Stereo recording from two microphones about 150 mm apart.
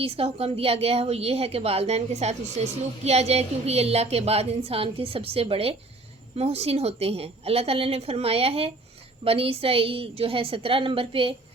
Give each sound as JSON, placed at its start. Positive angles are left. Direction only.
{"t": 0.0, "sound": "a woman's voice", "side_deg": -40}